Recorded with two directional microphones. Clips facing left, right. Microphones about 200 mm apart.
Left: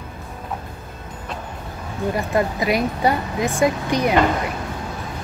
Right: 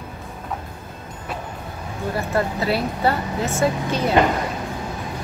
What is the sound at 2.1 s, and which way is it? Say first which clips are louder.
Speech: left 1 dB; 15° left (ahead or behind).